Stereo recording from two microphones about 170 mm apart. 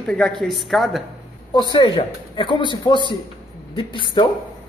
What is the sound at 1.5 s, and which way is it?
Speech, 25° left (ahead or behind).